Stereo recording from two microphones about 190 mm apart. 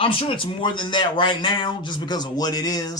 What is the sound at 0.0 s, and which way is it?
Speech, 30° left (ahead or behind).